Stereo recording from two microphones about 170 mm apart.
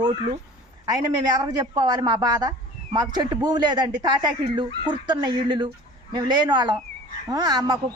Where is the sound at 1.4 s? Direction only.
25° right (ahead or behind).